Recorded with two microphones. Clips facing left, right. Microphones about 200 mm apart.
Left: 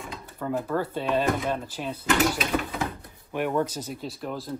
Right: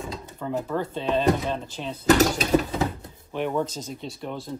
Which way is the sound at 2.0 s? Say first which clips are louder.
Right 5 dB; 40° right (ahead or behind).